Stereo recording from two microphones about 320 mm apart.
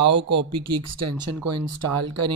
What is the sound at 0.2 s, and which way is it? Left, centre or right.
Speech, right.